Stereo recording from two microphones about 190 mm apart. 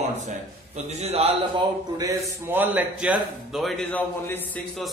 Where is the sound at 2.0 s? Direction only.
15° right (ahead or behind).